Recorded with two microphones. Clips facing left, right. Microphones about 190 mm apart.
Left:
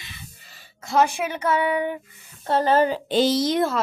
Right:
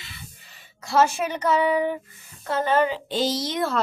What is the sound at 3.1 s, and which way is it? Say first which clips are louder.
Speech: left 8 dB; 65° left (ahead or behind).